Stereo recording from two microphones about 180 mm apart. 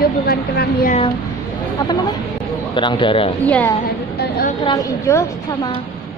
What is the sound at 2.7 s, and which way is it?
Speech, 25° left (ahead or behind).